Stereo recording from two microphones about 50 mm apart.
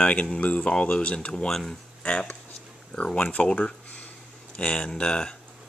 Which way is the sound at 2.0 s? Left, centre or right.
Left.